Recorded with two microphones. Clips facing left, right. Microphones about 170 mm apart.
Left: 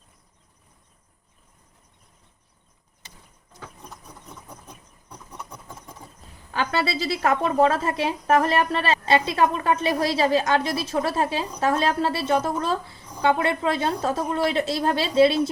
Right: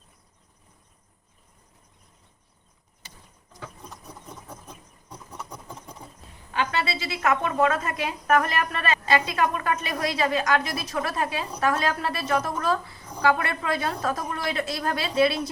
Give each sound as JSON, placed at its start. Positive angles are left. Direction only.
{"t": 5.4, "sound": "vehicle", "side_deg": -15}
{"t": 6.5, "sound": "a woman's voice", "side_deg": 35}